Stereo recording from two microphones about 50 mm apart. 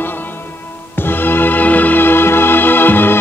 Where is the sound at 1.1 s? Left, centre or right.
Left.